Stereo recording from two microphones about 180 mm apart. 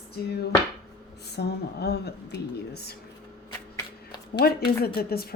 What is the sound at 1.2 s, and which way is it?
A woman's voice, 65° left (ahead or behind).